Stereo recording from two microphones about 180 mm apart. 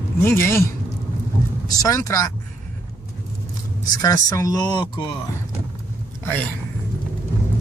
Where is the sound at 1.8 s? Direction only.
20° left (ahead or behind).